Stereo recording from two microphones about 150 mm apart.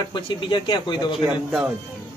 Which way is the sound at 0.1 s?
30° left (ahead or behind).